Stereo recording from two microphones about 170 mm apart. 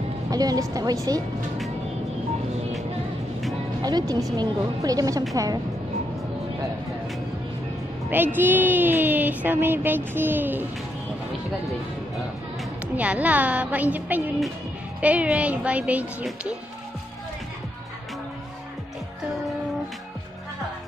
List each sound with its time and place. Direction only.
0.3 s speech: 20° right (ahead or behind)
3.8 s speech: 25° right (ahead or behind)
8.1 s speech: 10° right (ahead or behind)
12.9 s speech: 10° right (ahead or behind)